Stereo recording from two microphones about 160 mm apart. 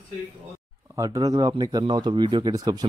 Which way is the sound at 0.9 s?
20° right (ahead or behind).